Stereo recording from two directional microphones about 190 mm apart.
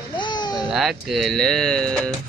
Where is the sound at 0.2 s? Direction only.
25° left (ahead or behind).